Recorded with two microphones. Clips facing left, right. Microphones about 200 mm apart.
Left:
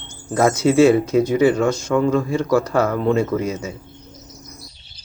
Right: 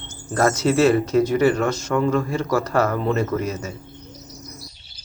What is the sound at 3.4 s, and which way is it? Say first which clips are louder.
Speech: left 2 dB; 15° left (ahead or behind).